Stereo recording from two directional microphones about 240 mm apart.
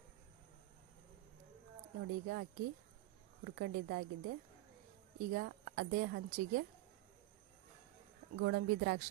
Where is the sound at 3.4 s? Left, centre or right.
Right.